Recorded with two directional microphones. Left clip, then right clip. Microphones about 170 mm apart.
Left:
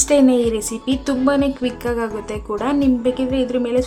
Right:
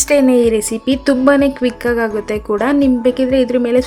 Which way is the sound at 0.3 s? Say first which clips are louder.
Right 5 dB; 15° right (ahead or behind).